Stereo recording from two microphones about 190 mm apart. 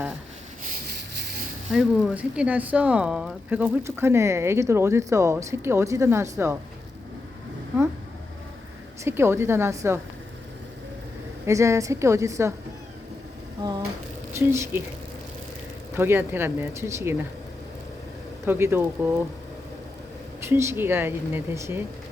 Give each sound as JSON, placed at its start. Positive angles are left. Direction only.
{"t": 1.7, "sound": "speech", "side_deg": -5}
{"t": 9.0, "sound": "speech", "side_deg": -10}
{"t": 11.4, "sound": "speech", "side_deg": -15}
{"t": 14.3, "sound": "speech", "side_deg": -15}
{"t": 16.0, "sound": "speech", "side_deg": -10}
{"t": 18.4, "sound": "speech", "side_deg": -10}
{"t": 20.4, "sound": "speech", "side_deg": -15}